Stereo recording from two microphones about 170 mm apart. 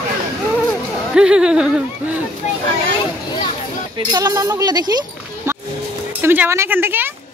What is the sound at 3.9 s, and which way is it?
Speech, 25° right (ahead or behind).